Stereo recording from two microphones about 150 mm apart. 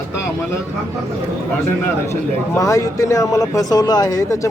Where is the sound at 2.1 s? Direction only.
20° left (ahead or behind).